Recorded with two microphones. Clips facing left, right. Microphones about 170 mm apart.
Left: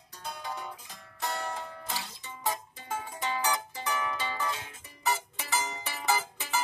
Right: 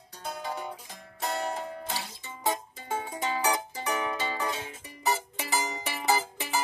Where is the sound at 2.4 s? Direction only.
25° right (ahead or behind).